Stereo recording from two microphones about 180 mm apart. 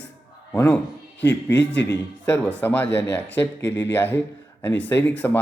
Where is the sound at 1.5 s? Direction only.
75° left (ahead or behind).